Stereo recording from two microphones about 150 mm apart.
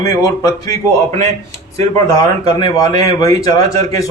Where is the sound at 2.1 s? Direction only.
20° left (ahead or behind).